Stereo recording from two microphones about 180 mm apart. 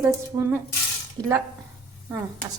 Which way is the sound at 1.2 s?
20° right (ahead or behind).